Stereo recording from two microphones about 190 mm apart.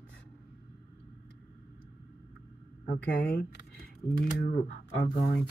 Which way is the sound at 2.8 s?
55° left (ahead or behind).